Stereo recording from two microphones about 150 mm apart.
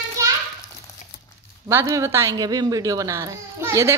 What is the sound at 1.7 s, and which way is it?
A child's voice, 20° right (ahead or behind).